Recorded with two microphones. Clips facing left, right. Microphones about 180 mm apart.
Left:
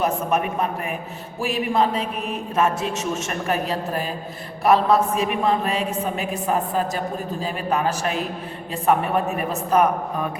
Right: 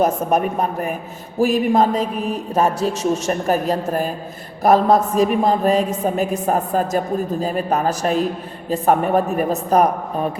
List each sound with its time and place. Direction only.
0.0 s a man's voice: 40° right (ahead or behind)